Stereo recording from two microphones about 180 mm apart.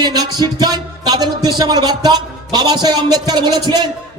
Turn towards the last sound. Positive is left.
turn(degrees=-25)  # may be behind; listen again after turning